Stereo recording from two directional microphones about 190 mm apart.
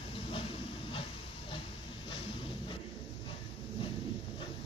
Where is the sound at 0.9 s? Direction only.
30° left (ahead or behind).